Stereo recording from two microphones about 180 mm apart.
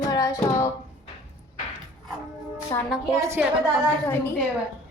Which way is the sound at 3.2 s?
15° right (ahead or behind).